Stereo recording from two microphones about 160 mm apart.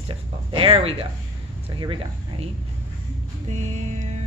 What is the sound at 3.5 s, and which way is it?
Music, 45° right (ahead or behind).